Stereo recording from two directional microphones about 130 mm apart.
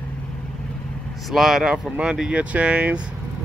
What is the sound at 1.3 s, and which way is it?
Speech, centre (ahead or behind).